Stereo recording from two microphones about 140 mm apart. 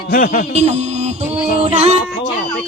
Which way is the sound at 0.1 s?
90° left.